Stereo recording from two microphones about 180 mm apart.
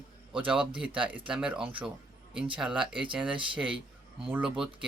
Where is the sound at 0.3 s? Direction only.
5° right (ahead or behind).